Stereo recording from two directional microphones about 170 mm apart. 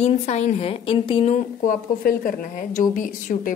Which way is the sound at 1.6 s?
55° left (ahead or behind).